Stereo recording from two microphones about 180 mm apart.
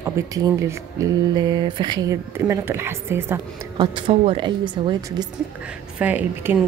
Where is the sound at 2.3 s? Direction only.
15° right (ahead or behind).